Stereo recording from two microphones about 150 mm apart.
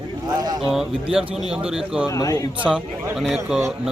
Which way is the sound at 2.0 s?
25° left (ahead or behind).